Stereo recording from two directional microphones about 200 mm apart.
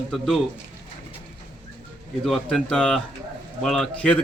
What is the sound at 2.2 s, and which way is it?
A man's voice, centre (ahead or behind).